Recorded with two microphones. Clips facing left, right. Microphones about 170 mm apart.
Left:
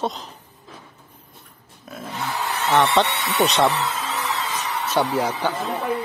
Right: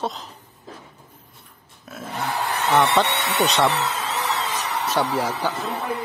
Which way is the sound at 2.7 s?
15° right (ahead or behind).